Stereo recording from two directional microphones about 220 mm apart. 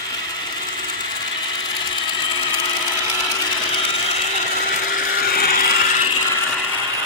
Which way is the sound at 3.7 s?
25° left (ahead or behind).